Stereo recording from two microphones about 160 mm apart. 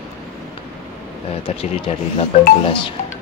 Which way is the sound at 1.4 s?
35° left (ahead or behind).